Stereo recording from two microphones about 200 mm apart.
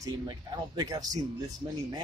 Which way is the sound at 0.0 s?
20° right (ahead or behind).